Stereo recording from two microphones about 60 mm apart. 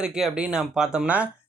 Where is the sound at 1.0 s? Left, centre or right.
Right.